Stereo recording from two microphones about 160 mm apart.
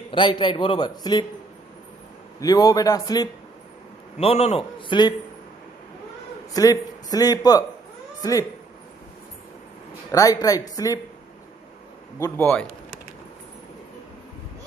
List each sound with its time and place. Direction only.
0.1 s a man's voice: 30° left (ahead or behind)
2.4 s a man's voice: 25° left (ahead or behind)
4.2 s a man's voice: 40° left (ahead or behind)
6.5 s a man's voice: 20° left (ahead or behind)
10.1 s a man's voice: 20° left (ahead or behind)
12.2 s a man's voice: 10° left (ahead or behind)